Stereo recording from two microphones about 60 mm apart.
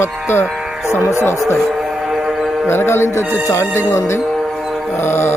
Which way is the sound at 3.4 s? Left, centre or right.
Left.